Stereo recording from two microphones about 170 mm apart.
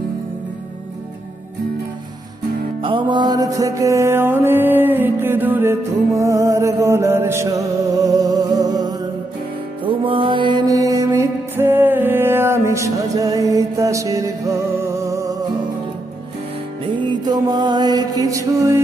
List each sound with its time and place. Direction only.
2.8 s music: 30° right (ahead or behind)
17.2 s music: 25° right (ahead or behind)